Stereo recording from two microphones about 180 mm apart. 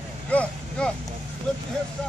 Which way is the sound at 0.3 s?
5° left (ahead or behind).